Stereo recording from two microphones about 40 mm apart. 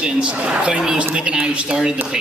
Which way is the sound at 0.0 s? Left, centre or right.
Right.